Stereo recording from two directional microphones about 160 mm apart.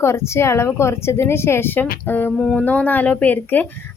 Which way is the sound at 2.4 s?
Centre (ahead or behind).